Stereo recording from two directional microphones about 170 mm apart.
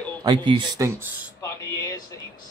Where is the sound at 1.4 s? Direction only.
20° left (ahead or behind).